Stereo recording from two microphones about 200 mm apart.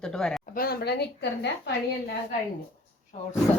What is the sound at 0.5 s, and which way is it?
A woman's voice, 50° left (ahead or behind).